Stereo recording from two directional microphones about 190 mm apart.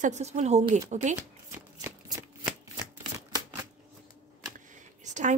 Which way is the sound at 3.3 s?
20° right (ahead or behind).